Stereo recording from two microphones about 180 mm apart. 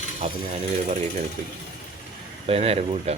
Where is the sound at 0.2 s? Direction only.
30° right (ahead or behind).